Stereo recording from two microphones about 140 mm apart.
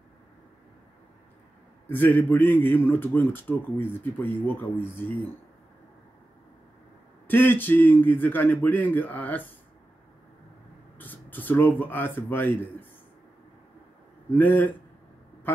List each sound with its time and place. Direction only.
1.9 s a man's voice: 15° left (ahead or behind)
7.2 s a man's voice: 15° left (ahead or behind)
11.0 s speech: 15° left (ahead or behind)
14.3 s a man's voice: 15° left (ahead or behind)